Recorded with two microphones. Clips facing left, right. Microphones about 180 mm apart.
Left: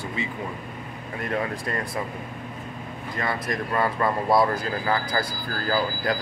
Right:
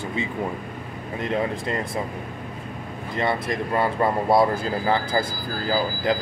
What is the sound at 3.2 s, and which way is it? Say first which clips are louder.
Speech: right 4 dB; 25° right (ahead or behind).